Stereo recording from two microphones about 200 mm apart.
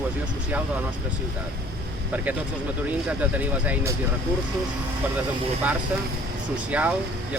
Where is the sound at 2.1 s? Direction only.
10° right (ahead or behind).